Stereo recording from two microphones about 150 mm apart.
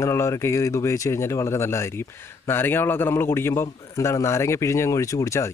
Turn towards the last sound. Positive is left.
turn(degrees=20)  # may be behind; listen again after turning